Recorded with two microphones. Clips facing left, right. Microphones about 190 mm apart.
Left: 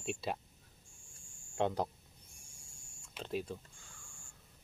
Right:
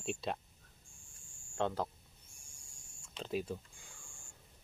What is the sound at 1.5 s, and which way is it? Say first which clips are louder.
Speech: left 2 dB; 15° left (ahead or behind).